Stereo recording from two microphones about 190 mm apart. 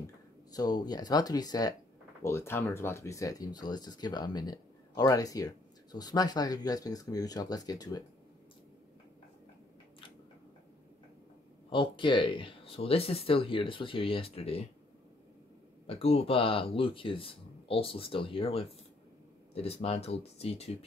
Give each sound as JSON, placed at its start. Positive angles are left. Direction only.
{"t": 0.0, "sound": "speech", "side_deg": 20}
{"t": 11.7, "sound": "speech", "side_deg": 25}
{"t": 15.9, "sound": "speech", "side_deg": 30}